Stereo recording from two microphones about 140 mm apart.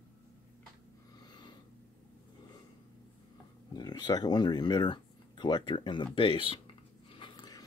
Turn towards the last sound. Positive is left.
turn(degrees=30)  # may be behind; listen again after turning